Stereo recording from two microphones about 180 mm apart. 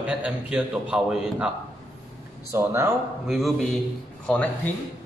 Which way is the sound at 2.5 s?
15° right (ahead or behind).